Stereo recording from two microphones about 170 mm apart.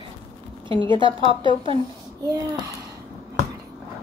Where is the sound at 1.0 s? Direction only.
30° right (ahead or behind).